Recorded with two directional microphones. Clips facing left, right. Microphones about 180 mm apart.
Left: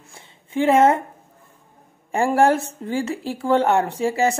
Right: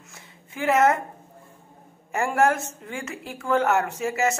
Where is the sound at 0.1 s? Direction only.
30° left (ahead or behind).